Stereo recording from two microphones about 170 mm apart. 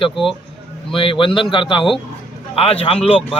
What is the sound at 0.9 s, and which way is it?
A man's voice, 30° left (ahead or behind).